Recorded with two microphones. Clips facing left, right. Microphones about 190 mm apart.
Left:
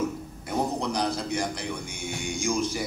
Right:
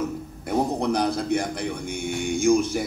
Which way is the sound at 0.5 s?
55° right (ahead or behind).